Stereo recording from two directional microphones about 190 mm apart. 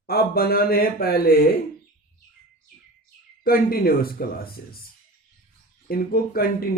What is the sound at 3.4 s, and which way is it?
Speech, 50° left (ahead or behind).